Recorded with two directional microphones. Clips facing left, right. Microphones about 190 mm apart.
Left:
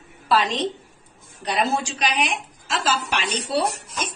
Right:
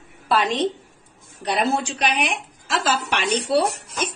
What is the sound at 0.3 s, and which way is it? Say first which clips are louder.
A woman's voice: right 1 dB; 55° right (ahead or behind).